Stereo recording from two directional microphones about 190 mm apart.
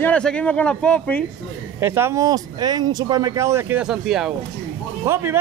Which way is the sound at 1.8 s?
15° right (ahead or behind).